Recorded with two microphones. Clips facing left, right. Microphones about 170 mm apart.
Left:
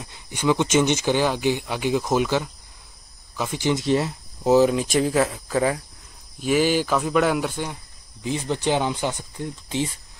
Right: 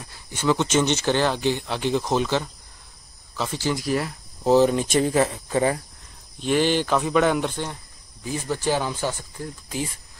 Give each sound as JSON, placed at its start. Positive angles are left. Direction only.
{"t": 0.0, "sound": "speech", "side_deg": 15}
{"t": 4.4, "sound": "speech", "side_deg": 5}
{"t": 8.2, "sound": "speech", "side_deg": 20}